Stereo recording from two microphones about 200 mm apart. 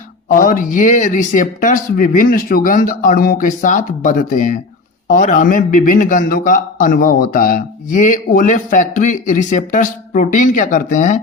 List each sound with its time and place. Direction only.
0.3 s a man's voice: 45° left (ahead or behind)